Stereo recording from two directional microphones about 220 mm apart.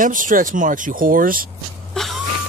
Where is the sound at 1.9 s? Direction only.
Centre (ahead or behind).